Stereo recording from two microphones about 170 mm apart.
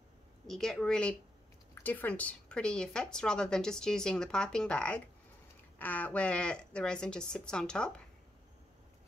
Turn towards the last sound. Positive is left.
turn(degrees=5)  # may be behind; listen again after turning